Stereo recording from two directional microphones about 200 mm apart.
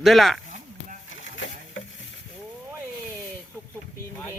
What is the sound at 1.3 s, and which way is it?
Stir, 65° left (ahead or behind).